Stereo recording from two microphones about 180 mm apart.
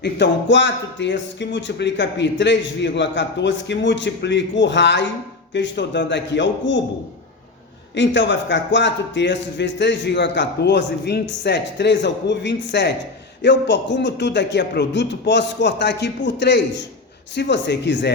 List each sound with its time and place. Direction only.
0.0 s speech: 80° left
7.9 s speech: 85° left